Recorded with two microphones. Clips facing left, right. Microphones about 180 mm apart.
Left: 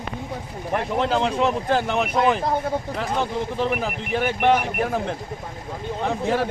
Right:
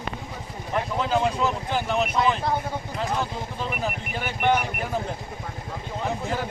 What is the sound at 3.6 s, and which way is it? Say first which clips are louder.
Speech: left 3 dB; 75° left (ahead or behind).